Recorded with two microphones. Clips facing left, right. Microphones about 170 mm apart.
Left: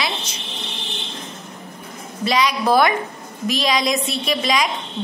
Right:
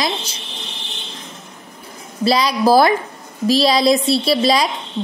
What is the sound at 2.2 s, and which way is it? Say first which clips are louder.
A woman's voice: right 4 dB; 35° right (ahead or behind).